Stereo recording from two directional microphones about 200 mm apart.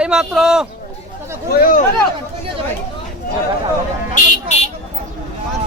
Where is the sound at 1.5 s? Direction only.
45° left (ahead or behind).